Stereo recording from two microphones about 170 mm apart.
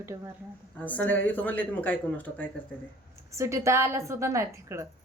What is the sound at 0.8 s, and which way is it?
Speech, 10° left (ahead or behind).